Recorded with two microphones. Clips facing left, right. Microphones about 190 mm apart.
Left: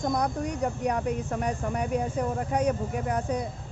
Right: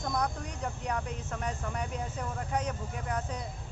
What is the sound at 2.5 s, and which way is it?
Speech, 10° left (ahead or behind).